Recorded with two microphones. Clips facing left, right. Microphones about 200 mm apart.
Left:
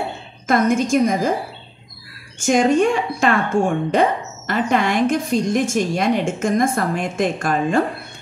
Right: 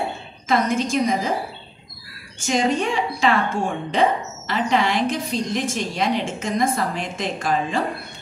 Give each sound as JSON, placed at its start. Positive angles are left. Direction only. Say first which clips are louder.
{"t": 0.5, "sound": "speech", "louder": "left 4 dB", "side_deg": 50}
{"t": 2.4, "sound": "speech", "louder": "left 6 dB", "side_deg": 50}